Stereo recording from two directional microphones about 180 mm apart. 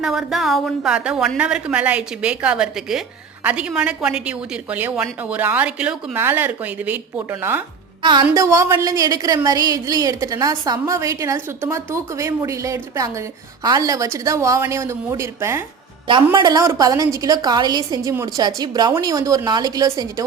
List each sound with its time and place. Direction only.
0.0 s a woman's voice: centre (ahead or behind)
16.0 s a woman's voice: 25° right (ahead or behind)